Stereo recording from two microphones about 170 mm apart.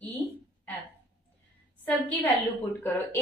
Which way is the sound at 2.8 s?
15° left (ahead or behind).